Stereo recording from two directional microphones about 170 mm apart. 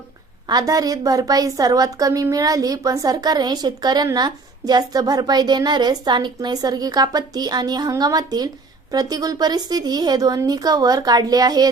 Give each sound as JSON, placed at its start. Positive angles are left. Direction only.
{"t": 0.4, "sound": "a woman's voice", "side_deg": -20}